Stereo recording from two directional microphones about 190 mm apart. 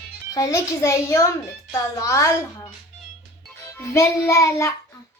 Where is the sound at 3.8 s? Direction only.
15° left (ahead or behind).